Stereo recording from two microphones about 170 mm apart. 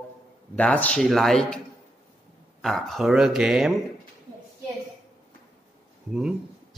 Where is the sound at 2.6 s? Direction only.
Centre (ahead or behind).